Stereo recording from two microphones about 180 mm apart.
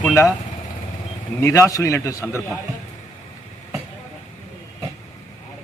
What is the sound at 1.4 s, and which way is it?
Speech, 15° left (ahead or behind).